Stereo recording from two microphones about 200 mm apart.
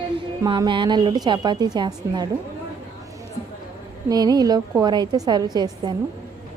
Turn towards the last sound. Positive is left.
turn(degrees=-20)  # may be behind; listen again after turning